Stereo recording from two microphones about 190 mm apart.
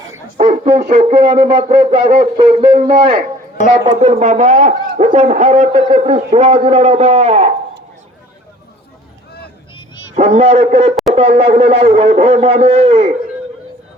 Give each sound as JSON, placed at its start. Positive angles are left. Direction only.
{"t": 0.3, "sound": "a sound", "side_deg": -40}
{"t": 0.8, "sound": "speech", "side_deg": -35}
{"t": 10.2, "sound": "speech", "side_deg": -35}